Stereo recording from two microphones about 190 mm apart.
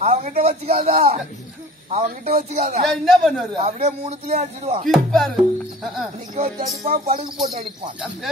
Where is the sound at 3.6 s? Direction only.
35° right (ahead or behind).